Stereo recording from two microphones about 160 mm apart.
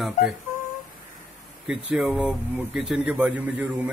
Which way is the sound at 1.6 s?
Centre (ahead or behind).